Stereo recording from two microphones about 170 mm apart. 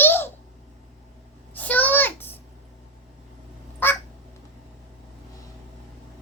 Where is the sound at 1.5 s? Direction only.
10° left (ahead or behind).